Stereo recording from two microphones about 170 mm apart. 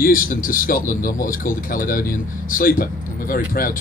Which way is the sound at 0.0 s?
55° left (ahead or behind).